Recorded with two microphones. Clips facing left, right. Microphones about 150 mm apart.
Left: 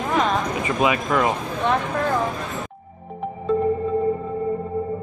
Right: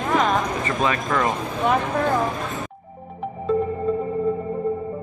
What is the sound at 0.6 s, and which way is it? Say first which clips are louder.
Speech: left 2 dB; 10° left (ahead or behind).